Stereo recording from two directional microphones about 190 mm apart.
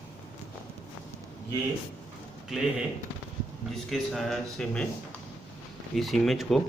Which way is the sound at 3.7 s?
Centre (ahead or behind).